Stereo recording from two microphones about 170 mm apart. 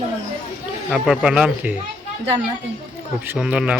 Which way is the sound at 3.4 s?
5° right (ahead or behind).